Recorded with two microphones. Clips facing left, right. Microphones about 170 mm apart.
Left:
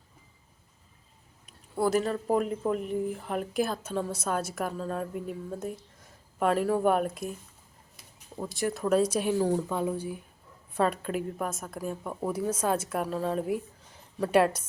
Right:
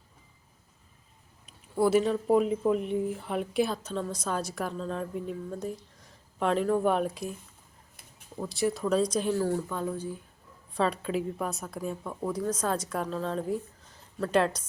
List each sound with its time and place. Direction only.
1.5 s speech: centre (ahead or behind)
8.4 s speech: centre (ahead or behind)